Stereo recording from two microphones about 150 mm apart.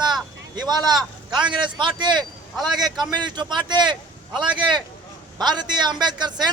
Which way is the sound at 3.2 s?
30° right (ahead or behind).